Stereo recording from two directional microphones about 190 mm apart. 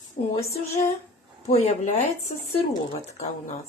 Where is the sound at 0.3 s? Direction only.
35° left (ahead or behind).